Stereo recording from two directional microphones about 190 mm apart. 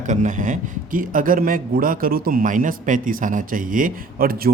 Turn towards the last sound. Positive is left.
turn(degrees=-50)  # may be behind; listen again after turning